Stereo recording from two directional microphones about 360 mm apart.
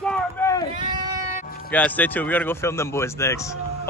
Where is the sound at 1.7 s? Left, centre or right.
Centre.